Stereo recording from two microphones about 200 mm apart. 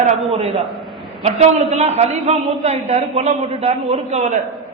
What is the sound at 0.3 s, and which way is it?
A man's voice, 30° right (ahead or behind).